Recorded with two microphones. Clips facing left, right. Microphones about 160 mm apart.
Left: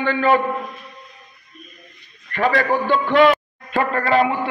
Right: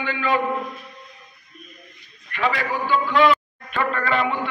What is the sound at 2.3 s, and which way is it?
Speech, 50° left (ahead or behind).